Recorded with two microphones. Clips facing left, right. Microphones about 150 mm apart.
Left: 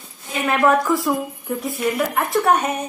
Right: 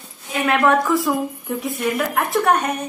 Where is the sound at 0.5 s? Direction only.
Centre (ahead or behind).